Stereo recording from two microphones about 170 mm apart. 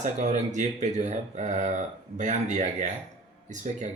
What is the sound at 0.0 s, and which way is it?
Speech, 45° right (ahead or behind).